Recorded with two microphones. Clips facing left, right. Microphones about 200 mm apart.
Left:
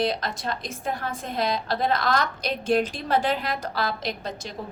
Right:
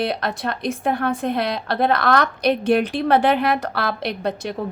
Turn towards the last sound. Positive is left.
turn(degrees=-60)  # may be behind; listen again after turning